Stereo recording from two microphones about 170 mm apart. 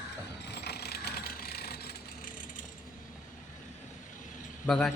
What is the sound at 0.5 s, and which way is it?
Ratchet, 70° left (ahead or behind).